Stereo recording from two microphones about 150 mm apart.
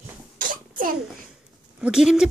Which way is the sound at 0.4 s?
65° right (ahead or behind).